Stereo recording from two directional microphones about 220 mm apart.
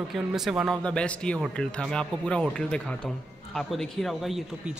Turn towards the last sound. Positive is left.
turn(degrees=0)  # may be behind; listen again after turning